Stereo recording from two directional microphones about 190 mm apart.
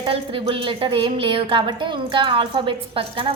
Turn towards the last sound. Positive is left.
turn(degrees=-30)  # may be behind; listen again after turning